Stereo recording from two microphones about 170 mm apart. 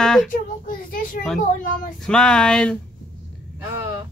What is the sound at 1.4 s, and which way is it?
Speech, 50° left (ahead or behind).